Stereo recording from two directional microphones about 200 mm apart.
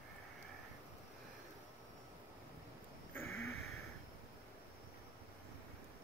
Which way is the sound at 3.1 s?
10° left (ahead or behind).